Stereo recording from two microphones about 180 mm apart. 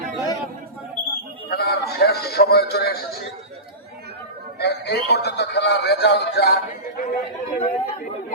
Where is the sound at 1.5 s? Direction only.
60° left (ahead or behind).